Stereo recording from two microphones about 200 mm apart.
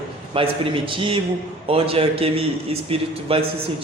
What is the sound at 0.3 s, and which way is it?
A man's voice, 25° right (ahead or behind).